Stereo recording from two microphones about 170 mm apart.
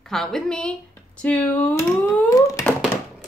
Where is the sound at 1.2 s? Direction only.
10° left (ahead or behind).